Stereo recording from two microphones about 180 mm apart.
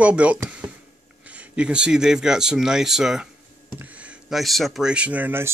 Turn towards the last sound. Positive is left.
turn(degrees=-10)  # may be behind; listen again after turning